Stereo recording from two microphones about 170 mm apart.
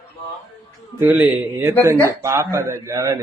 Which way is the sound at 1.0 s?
10° right (ahead or behind).